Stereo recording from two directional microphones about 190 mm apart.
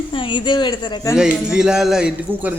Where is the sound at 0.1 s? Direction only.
25° left (ahead or behind).